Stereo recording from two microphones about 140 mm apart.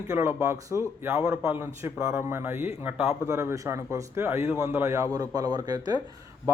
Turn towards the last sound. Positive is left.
turn(degrees=-30)  # may be behind; listen again after turning